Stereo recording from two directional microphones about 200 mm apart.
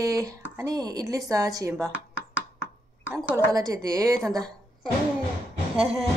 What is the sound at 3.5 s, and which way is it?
Speech, 15° right (ahead or behind).